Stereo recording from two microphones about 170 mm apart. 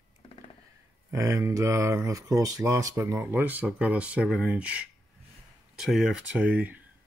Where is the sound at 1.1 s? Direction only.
15° right (ahead or behind).